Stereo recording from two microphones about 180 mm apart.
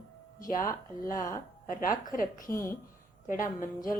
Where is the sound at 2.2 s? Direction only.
50° left (ahead or behind).